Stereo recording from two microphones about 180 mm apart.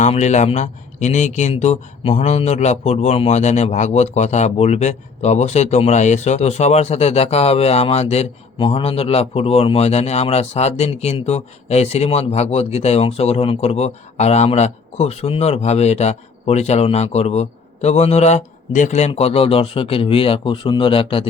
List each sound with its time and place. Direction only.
0.0 s speech: 40° left (ahead or behind)